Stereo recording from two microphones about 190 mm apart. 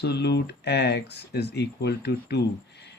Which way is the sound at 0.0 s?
60° left (ahead or behind).